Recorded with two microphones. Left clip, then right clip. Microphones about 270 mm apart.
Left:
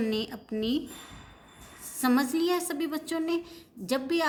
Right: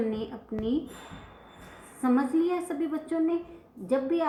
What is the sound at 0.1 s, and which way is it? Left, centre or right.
Speech, left.